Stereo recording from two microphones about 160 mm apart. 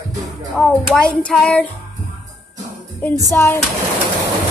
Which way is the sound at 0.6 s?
5° left (ahead or behind).